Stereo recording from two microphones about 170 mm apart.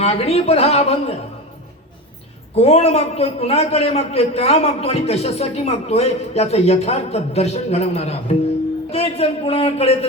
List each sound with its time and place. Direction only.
0.0 s a man's voice: 35° left (ahead or behind)
2.6 s a man's voice: 35° left (ahead or behind)